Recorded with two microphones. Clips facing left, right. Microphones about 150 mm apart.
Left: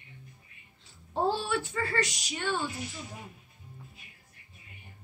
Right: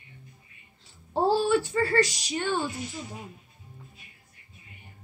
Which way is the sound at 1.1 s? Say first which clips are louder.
Right 6 dB; 35° right (ahead or behind).